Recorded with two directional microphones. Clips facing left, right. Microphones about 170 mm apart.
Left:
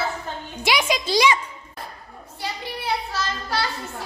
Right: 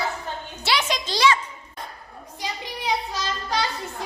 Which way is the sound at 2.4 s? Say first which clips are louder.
Left 1 dB; 15° right (ahead or behind).